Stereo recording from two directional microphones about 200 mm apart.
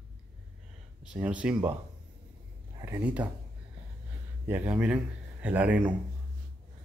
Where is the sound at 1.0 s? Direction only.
5° right (ahead or behind).